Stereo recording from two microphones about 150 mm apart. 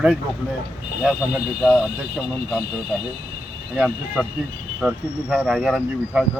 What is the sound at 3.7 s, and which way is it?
Speech, 5° right (ahead or behind).